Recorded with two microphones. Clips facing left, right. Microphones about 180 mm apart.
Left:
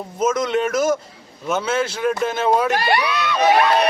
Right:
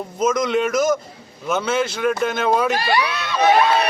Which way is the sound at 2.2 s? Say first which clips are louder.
Left 2 dB; 30° left (ahead or behind).